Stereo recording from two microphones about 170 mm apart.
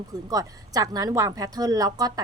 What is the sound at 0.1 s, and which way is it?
A woman's voice, 20° right (ahead or behind).